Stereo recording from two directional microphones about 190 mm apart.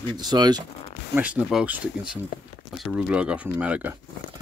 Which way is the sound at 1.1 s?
5° right (ahead or behind).